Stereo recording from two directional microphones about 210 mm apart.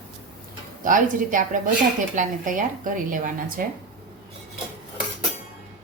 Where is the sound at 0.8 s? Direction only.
40° right (ahead or behind).